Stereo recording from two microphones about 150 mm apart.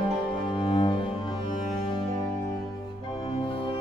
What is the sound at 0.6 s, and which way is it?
Music, 35° left (ahead or behind).